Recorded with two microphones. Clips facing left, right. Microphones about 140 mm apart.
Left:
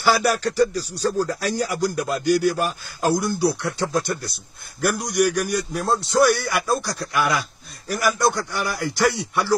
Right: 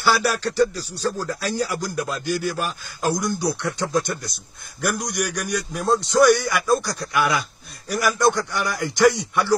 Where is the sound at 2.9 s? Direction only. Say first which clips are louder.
Left 2 dB; 5° left (ahead or behind).